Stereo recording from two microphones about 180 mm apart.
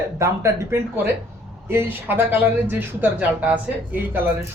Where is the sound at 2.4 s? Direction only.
10° right (ahead or behind).